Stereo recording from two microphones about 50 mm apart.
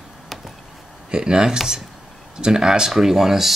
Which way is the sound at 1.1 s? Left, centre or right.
Centre.